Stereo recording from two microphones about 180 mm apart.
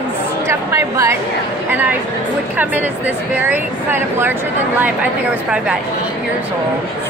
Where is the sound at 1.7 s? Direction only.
10° right (ahead or behind).